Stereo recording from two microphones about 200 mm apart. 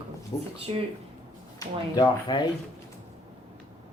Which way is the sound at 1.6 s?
20° left (ahead or behind).